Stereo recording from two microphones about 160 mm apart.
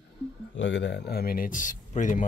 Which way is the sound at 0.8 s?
90° left.